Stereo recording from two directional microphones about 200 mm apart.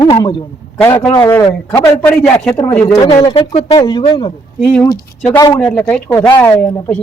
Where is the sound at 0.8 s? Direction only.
5° left (ahead or behind).